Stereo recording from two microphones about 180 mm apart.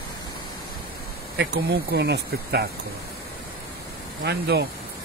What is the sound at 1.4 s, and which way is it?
Speech, 70° right (ahead or behind).